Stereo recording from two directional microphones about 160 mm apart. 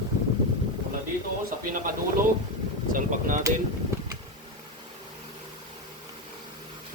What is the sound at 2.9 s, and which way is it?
Speech, 55° right (ahead or behind).